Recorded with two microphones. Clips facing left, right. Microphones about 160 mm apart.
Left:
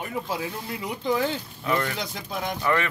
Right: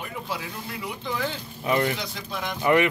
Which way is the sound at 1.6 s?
20° right (ahead or behind).